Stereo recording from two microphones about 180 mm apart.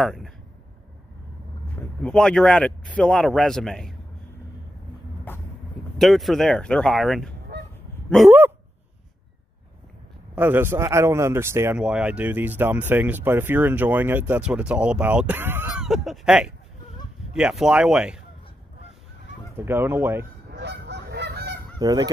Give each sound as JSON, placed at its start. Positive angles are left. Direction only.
{"t": 0.0, "sound": "a man's voice", "side_deg": 0}
{"t": 2.0, "sound": "a man's voice", "side_deg": 5}
{"t": 5.9, "sound": "a man's voice", "side_deg": 0}
{"t": 8.3, "sound": "speech", "side_deg": -10}
{"t": 10.3, "sound": "speech", "side_deg": -10}
{"t": 15.9, "sound": "a man's voice", "side_deg": 0}
{"t": 19.5, "sound": "speech", "side_deg": -10}
{"t": 20.5, "sound": "goose", "side_deg": -75}
{"t": 21.7, "sound": "goose", "side_deg": -20}